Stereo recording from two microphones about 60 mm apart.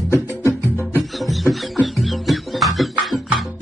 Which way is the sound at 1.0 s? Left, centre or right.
Centre.